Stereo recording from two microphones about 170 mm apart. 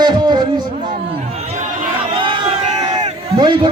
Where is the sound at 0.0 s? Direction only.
25° right (ahead or behind).